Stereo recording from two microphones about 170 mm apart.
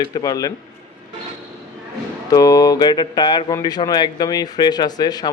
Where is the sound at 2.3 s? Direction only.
20° left (ahead or behind).